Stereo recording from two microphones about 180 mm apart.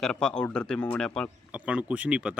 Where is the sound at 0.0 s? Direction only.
5° left (ahead or behind).